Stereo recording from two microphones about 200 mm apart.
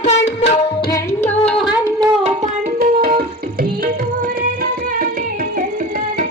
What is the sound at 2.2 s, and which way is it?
Music, 40° right (ahead or behind).